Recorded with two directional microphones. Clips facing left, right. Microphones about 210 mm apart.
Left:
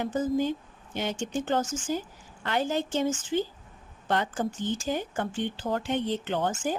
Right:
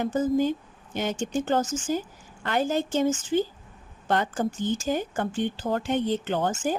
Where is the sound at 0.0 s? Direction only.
45° right (ahead or behind).